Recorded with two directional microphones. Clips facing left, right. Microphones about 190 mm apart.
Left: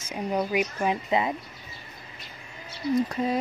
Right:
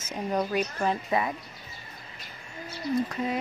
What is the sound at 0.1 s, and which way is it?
Speech, 10° left (ahead or behind).